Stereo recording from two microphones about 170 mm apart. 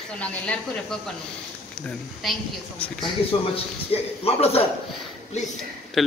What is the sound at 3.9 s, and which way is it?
Speech, 35° left (ahead or behind).